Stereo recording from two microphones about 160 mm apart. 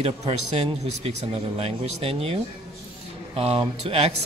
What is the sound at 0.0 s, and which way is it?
A man's voice, 40° right (ahead or behind).